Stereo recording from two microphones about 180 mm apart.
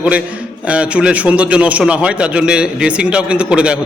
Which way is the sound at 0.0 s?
5° right (ahead or behind).